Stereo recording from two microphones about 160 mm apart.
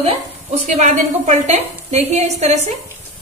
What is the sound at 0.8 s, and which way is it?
A woman's voice, 45° right (ahead or behind).